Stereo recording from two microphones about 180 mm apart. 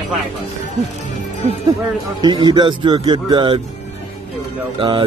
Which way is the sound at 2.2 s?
25° right (ahead or behind).